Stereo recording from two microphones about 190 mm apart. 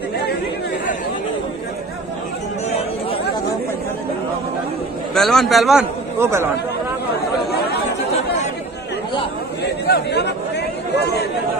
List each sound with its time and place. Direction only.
5.1 s a man's voice: centre (ahead or behind)
6.1 s speech: 15° right (ahead or behind)
9.6 s chatter: 60° left (ahead or behind)